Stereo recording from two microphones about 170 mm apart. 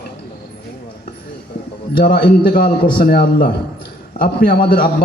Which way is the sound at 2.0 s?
60° left (ahead or behind).